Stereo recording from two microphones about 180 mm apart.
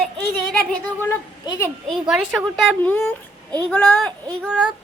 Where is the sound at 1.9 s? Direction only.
Centre (ahead or behind).